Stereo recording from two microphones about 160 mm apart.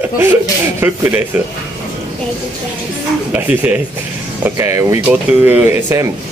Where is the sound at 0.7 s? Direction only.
15° right (ahead or behind).